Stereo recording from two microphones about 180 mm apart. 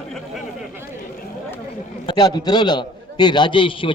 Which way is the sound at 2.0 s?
25° left (ahead or behind).